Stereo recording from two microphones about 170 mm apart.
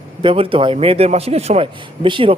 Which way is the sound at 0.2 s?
30° right (ahead or behind).